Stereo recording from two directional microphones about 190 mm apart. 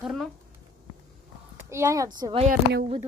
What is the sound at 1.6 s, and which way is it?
Speech, 15° right (ahead or behind).